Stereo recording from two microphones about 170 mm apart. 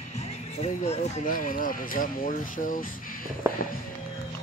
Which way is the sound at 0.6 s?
40° left (ahead or behind).